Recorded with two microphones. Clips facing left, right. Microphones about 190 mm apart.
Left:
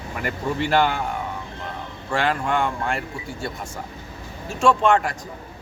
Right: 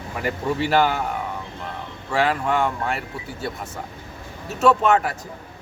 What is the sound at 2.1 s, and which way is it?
Speech, 5° right (ahead or behind).